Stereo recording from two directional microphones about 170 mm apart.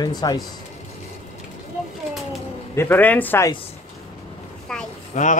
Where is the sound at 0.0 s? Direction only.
25° left (ahead or behind).